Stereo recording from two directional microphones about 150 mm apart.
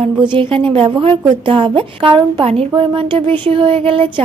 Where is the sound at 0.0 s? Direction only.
35° right (ahead or behind).